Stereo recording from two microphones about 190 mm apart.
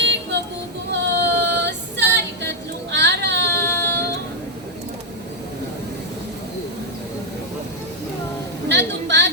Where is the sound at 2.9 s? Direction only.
65° right (ahead or behind).